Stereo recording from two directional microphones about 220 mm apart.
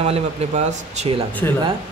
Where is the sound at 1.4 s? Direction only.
10° left (ahead or behind).